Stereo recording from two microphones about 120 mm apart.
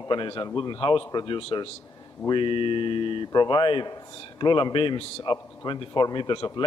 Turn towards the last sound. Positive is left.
turn(degrees=40)  # may be behind; listen again after turning